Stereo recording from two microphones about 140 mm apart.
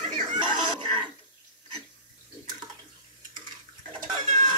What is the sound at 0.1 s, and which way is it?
Television, 35° right (ahead or behind).